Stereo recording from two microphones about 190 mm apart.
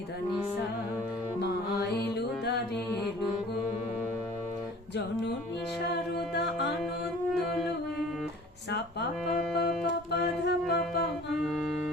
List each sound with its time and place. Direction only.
1.4 s music: 65° left (ahead or behind)
5.9 s music: 60° left (ahead or behind)
8.7 s music: 60° left (ahead or behind)
11.3 s music: centre (ahead or behind)